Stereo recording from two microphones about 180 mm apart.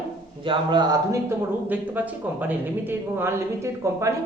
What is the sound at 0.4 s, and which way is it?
Speech, 25° right (ahead or behind).